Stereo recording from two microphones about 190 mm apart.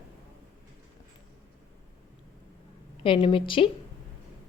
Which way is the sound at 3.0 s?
30° left (ahead or behind).